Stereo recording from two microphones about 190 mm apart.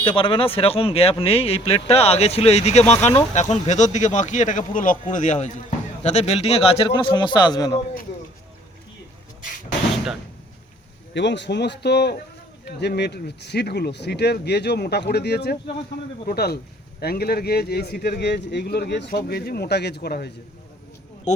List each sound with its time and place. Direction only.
0.0 s a man's voice: 25° left (ahead or behind)
11.1 s speech: 70° left (ahead or behind)